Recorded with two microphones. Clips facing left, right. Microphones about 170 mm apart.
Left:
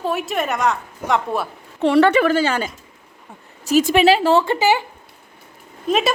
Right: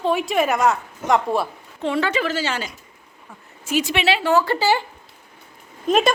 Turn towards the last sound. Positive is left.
turn(degrees=5)  # may be behind; listen again after turning